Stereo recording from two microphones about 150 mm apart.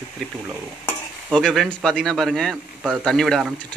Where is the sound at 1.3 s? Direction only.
5° left (ahead or behind).